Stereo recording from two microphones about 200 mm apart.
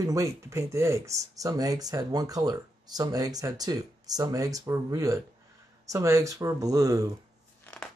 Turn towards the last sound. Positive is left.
turn(degrees=5)  # may be behind; listen again after turning